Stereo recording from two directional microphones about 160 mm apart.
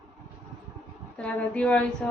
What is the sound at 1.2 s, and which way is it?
Speech, 5° left (ahead or behind).